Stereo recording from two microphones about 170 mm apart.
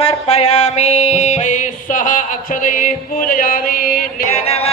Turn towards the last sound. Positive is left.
turn(degrees=40)  # may be behind; listen again after turning